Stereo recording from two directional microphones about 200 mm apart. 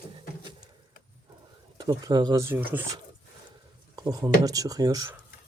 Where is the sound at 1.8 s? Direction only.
20° right (ahead or behind).